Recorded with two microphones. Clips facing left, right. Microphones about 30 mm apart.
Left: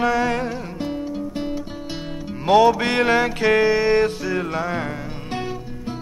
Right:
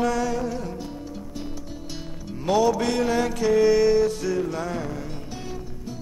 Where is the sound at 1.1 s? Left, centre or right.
Left.